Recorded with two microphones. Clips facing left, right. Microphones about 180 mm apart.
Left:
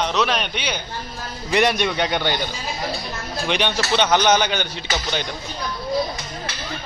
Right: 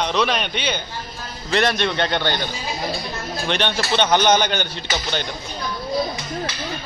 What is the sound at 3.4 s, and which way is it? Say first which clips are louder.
A man's voice: left 1 dB; 5° left (ahead or behind).